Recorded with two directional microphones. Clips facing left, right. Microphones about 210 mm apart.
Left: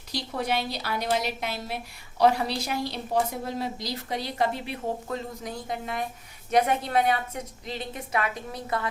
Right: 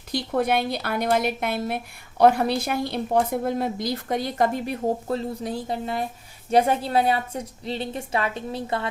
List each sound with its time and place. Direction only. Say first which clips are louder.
0.1 s a woman's voice: right 6 dB; 55° right (ahead or behind); by 8.9 s 30° right (ahead or behind)